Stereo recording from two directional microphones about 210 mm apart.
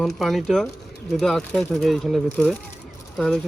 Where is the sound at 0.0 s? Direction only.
Centre (ahead or behind).